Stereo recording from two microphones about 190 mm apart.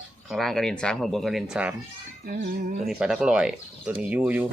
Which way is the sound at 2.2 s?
50° right (ahead or behind).